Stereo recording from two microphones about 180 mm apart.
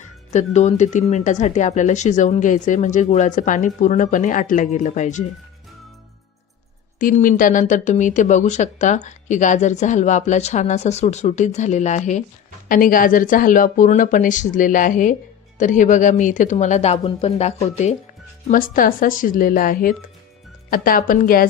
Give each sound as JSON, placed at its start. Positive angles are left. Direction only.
{"t": 0.3, "sound": "speech", "side_deg": 40}
{"t": 7.0, "sound": "speech", "side_deg": 50}
{"t": 18.4, "sound": "speech", "side_deg": 50}